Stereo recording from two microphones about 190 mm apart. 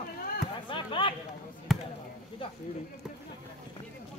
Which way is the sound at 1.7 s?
Centre (ahead or behind).